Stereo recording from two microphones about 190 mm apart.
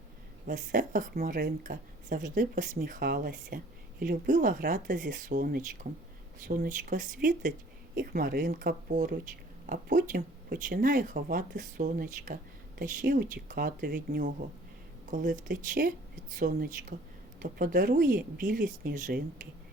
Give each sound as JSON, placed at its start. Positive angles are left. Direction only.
{"t": 0.4, "sound": "a woman's voice", "side_deg": -45}